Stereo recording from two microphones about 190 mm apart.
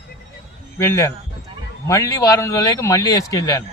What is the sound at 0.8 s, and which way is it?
A man's voice, 15° left (ahead or behind).